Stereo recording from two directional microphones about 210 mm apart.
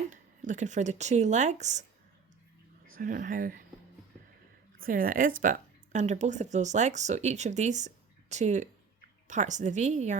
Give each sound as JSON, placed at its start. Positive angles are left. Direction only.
{"t": 0.1, "sound": "speech", "side_deg": -35}
{"t": 2.9, "sound": "a woman's voice", "side_deg": -40}
{"t": 4.8, "sound": "a woman's voice", "side_deg": -40}